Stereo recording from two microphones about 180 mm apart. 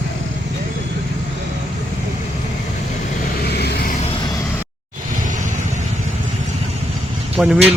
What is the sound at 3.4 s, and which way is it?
Vehicle, 65° left (ahead or behind).